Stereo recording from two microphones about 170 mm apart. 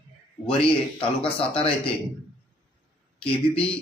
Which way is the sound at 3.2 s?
35° left (ahead or behind).